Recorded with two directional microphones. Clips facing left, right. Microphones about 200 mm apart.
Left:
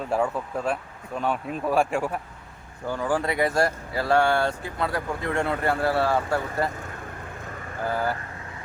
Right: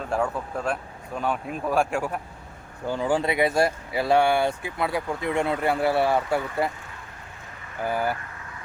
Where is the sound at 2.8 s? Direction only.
20° right (ahead or behind).